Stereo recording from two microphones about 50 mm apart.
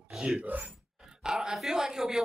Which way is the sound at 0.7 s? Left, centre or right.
Centre.